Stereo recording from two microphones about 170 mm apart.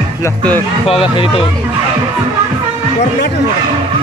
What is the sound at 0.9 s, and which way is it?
Speech, 35° left (ahead or behind).